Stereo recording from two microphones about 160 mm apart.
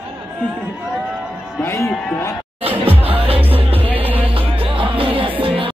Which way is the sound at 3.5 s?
35° right (ahead or behind).